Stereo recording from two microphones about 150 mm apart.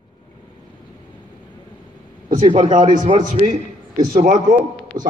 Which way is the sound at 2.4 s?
45° right (ahead or behind).